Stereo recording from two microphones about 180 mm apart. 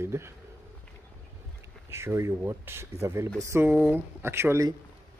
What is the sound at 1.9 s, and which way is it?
Speech, 15° right (ahead or behind).